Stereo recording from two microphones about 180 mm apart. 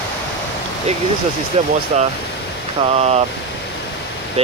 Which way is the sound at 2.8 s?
35° right (ahead or behind).